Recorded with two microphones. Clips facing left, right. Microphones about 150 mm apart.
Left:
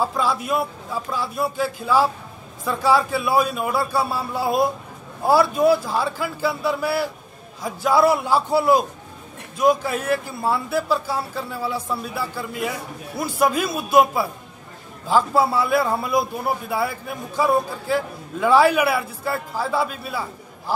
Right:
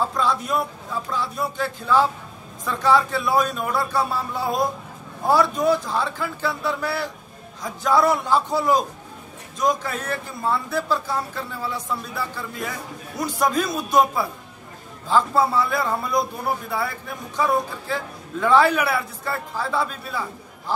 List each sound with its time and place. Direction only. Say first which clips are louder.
0.0 s a man's voice: left 1 dB; 5° left (ahead or behind)